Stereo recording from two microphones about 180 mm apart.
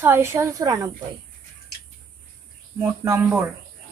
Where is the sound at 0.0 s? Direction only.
15° right (ahead or behind).